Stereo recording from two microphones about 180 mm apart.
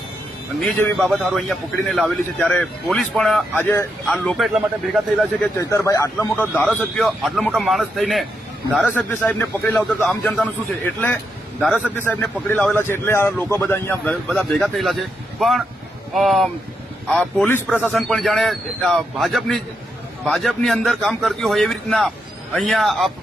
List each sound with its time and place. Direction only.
0.6 s a man's voice: 10° left (ahead or behind)
3.6 s a man's voice: 10° left (ahead or behind)
4.0 s a man's voice: centre (ahead or behind)
5.5 s a man's voice: 15° left (ahead or behind)
11.9 s a man's voice: 10° left (ahead or behind)
17.8 s a man's voice: centre (ahead or behind)